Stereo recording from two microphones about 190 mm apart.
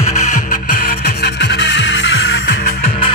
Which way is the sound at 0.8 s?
60° left (ahead or behind).